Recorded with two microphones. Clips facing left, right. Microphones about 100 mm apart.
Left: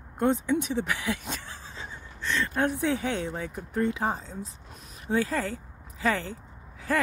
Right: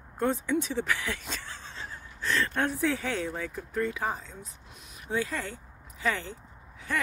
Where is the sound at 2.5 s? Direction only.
15° left (ahead or behind).